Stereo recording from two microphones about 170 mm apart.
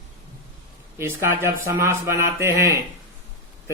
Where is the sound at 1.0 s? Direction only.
15° right (ahead or behind).